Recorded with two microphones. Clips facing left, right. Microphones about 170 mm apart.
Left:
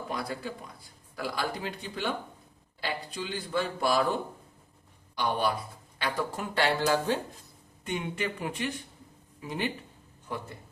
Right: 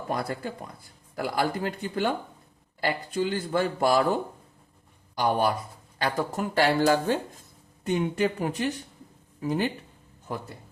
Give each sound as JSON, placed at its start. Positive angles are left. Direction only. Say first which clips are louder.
{"t": 0.1, "sound": "speech", "louder": "right 6 dB", "side_deg": -50}
{"t": 5.1, "sound": "speech", "louder": "right 4 dB", "side_deg": -45}